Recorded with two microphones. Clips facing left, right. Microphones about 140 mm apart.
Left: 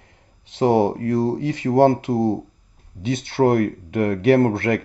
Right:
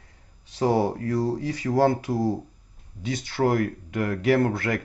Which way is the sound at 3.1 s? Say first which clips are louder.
Left 6 dB; 60° left (ahead or behind).